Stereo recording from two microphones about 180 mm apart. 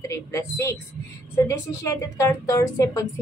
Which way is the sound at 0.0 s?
15° left (ahead or behind).